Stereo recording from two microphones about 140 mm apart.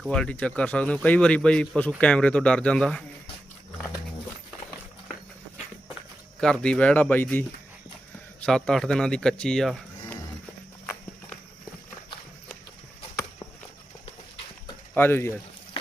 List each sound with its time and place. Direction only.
0.0 s speech: 5° left (ahead or behind)
6.4 s speech: 5° left (ahead or behind)
8.4 s speech: 5° left (ahead or behind)
13.1 s walk: 20° left (ahead or behind)
14.9 s speech: 15° left (ahead or behind)